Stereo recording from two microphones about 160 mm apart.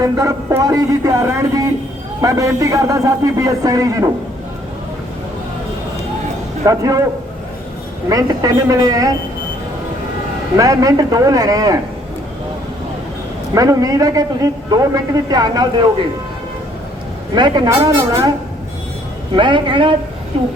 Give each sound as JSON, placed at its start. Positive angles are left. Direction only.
{"t": 0.0, "sound": "speech", "side_deg": -20}
{"t": 6.7, "sound": "speech", "side_deg": -20}
{"t": 8.1, "sound": "speech", "side_deg": -25}
{"t": 10.6, "sound": "speech", "side_deg": -20}
{"t": 13.5, "sound": "speech", "side_deg": -20}
{"t": 17.3, "sound": "speech", "side_deg": -25}
{"t": 19.3, "sound": "a woman's voice", "side_deg": -30}